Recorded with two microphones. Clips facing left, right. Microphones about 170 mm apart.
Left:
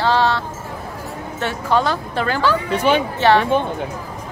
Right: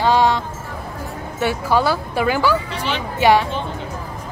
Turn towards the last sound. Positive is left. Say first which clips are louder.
# even
turn(degrees=-10)  # may be behind; listen again after turning